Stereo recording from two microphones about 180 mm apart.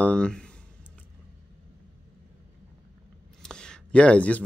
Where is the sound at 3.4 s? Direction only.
5° left (ahead or behind).